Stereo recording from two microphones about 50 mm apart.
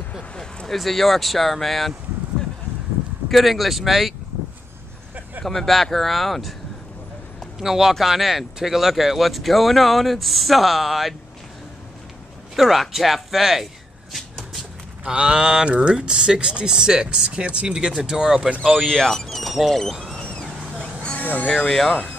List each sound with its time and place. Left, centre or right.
0.2 s a sound: centre
0.7 s speech: centre
3.3 s speech: centre
5.4 s speech: centre
7.5 s speech: centre
12.5 s speech: centre
15.0 s speech: centre
18.6 s speech: centre
20.2 s vehicle: left
21.2 s a sound: left
21.6 s speech: centre